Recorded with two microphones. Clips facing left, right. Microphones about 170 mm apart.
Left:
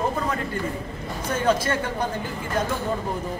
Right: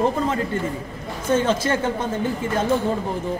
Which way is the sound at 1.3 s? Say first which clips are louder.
Right 1 dB; 25° right (ahead or behind).